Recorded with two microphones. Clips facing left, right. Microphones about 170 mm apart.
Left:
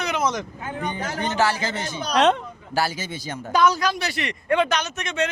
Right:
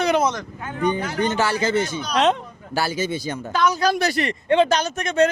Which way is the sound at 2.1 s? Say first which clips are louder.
Left 1 dB; centre (ahead or behind).